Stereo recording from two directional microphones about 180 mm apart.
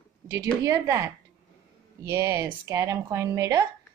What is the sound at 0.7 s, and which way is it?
A woman's voice, 20° right (ahead or behind).